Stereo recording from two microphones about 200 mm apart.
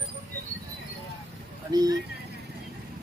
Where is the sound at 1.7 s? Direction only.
20° right (ahead or behind).